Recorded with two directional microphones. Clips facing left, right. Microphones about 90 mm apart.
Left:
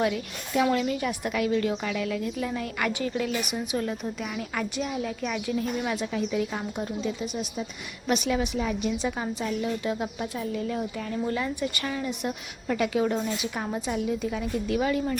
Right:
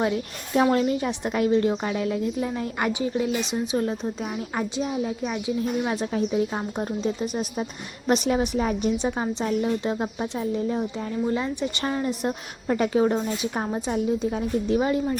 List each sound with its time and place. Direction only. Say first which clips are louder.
0.0 s a woman's voice: right 2 dB; 35° right (ahead or behind)
11.9 s a woman's voice: right 4 dB; 40° right (ahead or behind)